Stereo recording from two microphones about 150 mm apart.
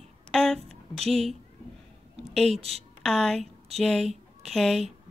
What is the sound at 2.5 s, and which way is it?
Speech, 40° right (ahead or behind).